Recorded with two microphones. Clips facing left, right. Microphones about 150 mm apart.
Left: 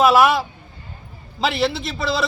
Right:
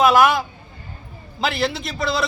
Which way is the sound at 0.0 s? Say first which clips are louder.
Left 1 dB; centre (ahead or behind).